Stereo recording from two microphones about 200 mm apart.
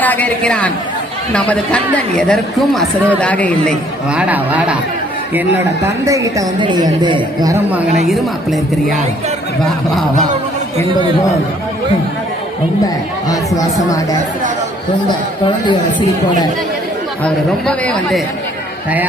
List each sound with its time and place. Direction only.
0.0 s a woman's voice: 10° left (ahead or behind)
4.1 s a woman's voice: 5° right (ahead or behind)
6.1 s a woman's voice: 15° right (ahead or behind)
8.1 s a woman's voice: centre (ahead or behind)
10.8 s speech: 25° right (ahead or behind)
13.2 s speech: 15° left (ahead or behind)
15.4 s speech: 20° left (ahead or behind)
17.2 s a woman's voice: 5° left (ahead or behind)